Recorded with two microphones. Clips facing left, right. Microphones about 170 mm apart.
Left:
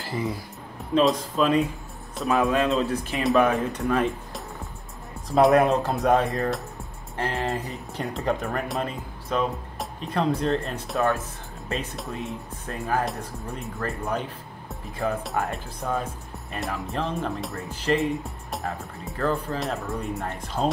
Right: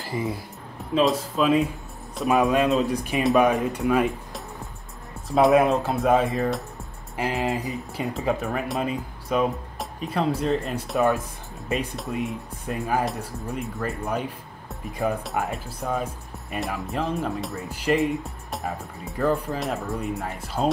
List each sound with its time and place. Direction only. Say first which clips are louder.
0.0 s music: right 1 dB; centre (ahead or behind)
0.9 s speech: even; centre (ahead or behind)
2.2 s speech: right 2 dB; 15° right (ahead or behind)
15.2 s speech: even; centre (ahead or behind)
17.6 s speech: right 1 dB; 10° right (ahead or behind)
18.2 s speech: even; centre (ahead or behind)